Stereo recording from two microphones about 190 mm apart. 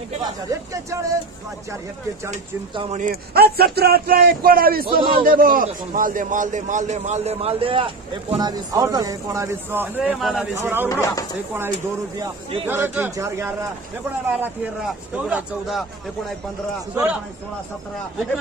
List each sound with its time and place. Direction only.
0.2 s speech: 15° right (ahead or behind)
2.7 s speech: 30° right (ahead or behind)
3.0 s a man's voice: 55° right (ahead or behind); by 10.9 s 10° right (ahead or behind)
10.9 s speech: 20° left (ahead or behind)
12.2 s speech: 30° right (ahead or behind)
12.6 s speech: 10° right (ahead or behind)
16.9 s speech: 5° right (ahead or behind)